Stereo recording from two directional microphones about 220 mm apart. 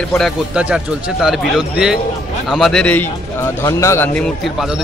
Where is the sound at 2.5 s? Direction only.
Centre (ahead or behind).